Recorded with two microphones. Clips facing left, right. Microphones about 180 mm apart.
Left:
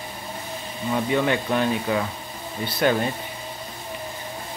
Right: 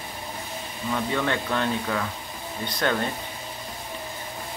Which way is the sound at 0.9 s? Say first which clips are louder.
Left 4 dB; 15° left (ahead or behind).